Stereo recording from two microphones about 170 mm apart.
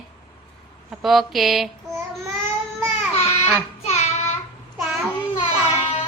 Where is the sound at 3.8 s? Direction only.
40° left (ahead or behind).